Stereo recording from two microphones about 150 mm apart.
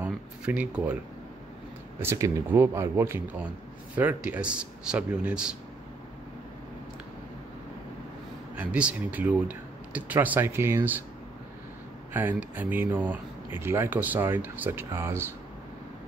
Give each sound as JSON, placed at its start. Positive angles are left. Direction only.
{"t": 0.0, "sound": "a sound", "side_deg": -10}
{"t": 2.0, "sound": "speech", "side_deg": -20}
{"t": 8.5, "sound": "speech", "side_deg": -10}
{"t": 12.1, "sound": "speech", "side_deg": -10}